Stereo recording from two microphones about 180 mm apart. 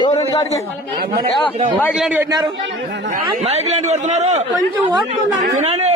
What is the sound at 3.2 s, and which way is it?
A man's voice, 35° right (ahead or behind).